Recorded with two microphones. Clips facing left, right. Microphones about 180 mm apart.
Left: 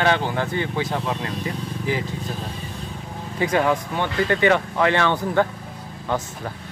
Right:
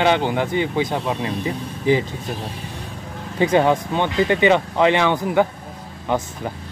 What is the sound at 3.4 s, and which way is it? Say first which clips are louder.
Speech: right 4 dB; 25° right (ahead or behind).